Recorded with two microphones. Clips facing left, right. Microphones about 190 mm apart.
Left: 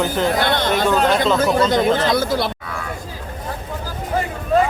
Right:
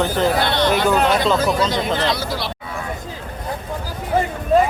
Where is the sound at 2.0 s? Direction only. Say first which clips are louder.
Left 4 dB; 50° left (ahead or behind).